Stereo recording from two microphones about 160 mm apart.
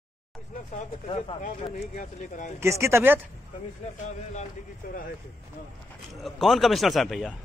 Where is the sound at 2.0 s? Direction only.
50° left (ahead or behind).